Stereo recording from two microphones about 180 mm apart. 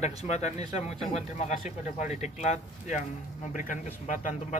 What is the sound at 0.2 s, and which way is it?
Speech, 40° left (ahead or behind).